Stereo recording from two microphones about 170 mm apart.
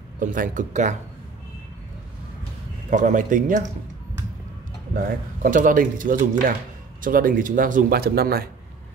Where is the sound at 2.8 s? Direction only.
45° right (ahead or behind).